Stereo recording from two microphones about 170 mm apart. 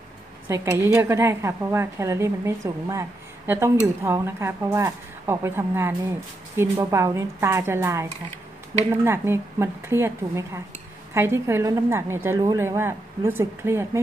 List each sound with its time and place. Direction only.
0.9 s a woman's voice: 15° right (ahead or behind)